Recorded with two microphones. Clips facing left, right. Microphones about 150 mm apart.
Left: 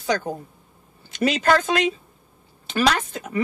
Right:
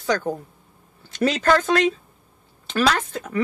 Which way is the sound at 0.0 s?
15° left (ahead or behind).